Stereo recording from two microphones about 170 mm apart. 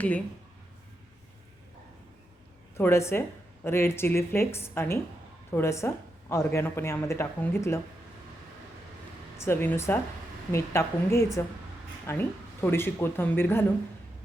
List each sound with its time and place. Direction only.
2.7 s a woman's voice: 15° left (ahead or behind)
9.4 s a woman's voice: 15° left (ahead or behind)